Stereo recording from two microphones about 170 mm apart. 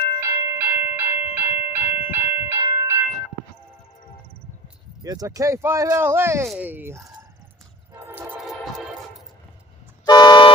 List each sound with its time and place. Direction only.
0.2 s train: 20° right (ahead or behind)
5.0 s speech: 20° right (ahead or behind)
10.1 s toot: 25° left (ahead or behind)